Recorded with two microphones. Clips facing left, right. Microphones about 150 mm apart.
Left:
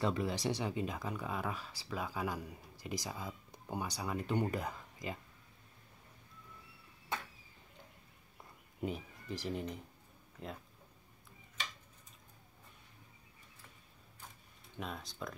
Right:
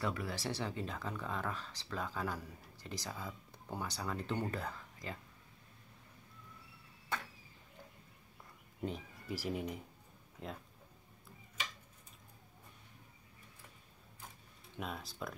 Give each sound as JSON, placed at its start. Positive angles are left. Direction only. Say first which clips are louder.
{"t": 0.0, "sound": "speech", "louder": "left 4 dB", "side_deg": 25}
{"t": 9.3, "sound": "speech", "louder": "right 1 dB", "side_deg": -5}
{"t": 14.8, "sound": "speech", "louder": "even", "side_deg": 0}